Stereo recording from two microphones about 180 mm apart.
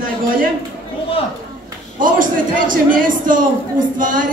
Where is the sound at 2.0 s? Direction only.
50° right (ahead or behind).